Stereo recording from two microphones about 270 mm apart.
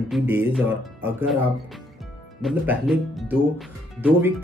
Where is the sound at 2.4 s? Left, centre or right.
Centre.